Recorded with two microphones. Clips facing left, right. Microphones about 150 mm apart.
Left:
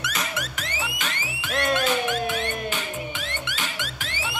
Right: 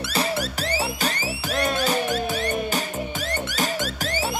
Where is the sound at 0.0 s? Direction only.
35° right (ahead or behind).